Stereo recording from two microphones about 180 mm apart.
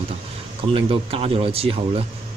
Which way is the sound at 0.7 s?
30° right (ahead or behind).